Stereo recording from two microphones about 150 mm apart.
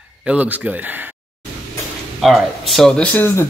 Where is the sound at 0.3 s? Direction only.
10° right (ahead or behind).